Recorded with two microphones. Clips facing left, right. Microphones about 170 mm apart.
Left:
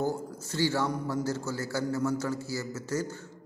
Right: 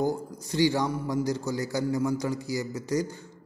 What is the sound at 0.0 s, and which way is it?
A man's voice, 15° right (ahead or behind).